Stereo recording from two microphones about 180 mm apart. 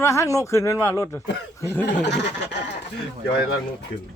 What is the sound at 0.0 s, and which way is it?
Speech, 15° left (ahead or behind).